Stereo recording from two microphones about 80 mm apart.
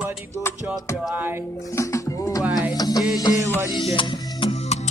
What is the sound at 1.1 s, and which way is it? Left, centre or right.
Speech, right.